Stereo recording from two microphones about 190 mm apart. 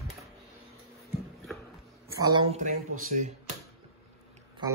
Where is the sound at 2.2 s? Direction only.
25° right (ahead or behind).